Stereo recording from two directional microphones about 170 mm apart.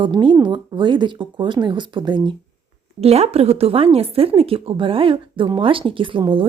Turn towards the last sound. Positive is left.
turn(degrees=-30)  # may be behind; listen again after turning